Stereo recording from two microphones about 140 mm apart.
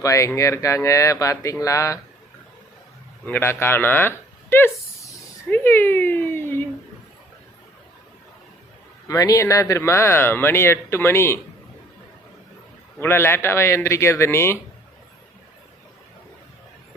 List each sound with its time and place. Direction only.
0.0 s speech: 20° left (ahead or behind)
3.2 s a sound: 15° left (ahead or behind)
9.0 s speech: 25° left (ahead or behind)
13.0 s speech: 15° left (ahead or behind)